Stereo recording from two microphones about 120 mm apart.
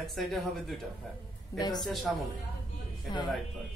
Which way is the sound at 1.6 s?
35° left (ahead or behind).